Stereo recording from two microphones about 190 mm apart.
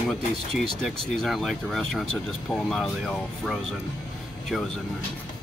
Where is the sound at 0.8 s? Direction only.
Centre (ahead or behind).